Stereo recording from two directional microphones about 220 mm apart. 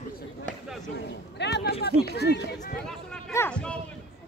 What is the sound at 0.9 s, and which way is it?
Speech, 50° left (ahead or behind).